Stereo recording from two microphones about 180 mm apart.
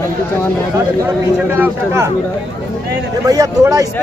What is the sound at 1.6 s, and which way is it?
Speech, 15° right (ahead or behind).